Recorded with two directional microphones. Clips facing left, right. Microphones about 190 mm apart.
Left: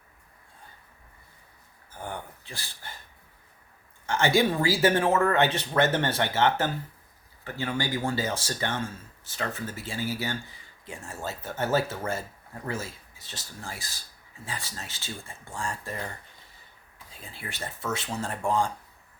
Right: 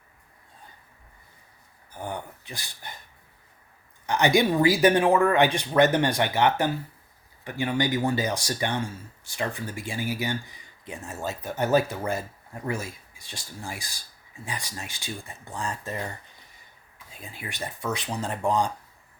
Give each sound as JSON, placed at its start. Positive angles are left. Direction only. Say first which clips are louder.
{"t": 1.9, "sound": "a sound", "louder": "right 3 dB", "side_deg": -15}
{"t": 4.0, "sound": "speech", "louder": "right 2 dB", "side_deg": -15}
{"t": 17.2, "sound": "speech", "louder": "right 2 dB", "side_deg": -15}